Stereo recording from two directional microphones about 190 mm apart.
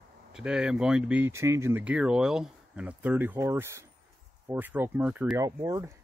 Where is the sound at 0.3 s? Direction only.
5° right (ahead or behind).